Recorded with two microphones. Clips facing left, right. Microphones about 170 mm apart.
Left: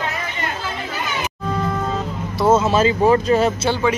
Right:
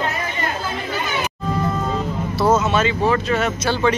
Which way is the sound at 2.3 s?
25° left (ahead or behind).